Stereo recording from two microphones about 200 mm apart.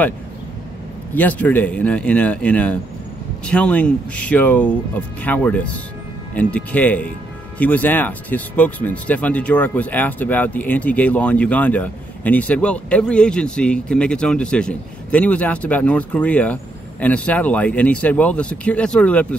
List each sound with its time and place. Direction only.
1.1 s speech: 10° left (ahead or behind)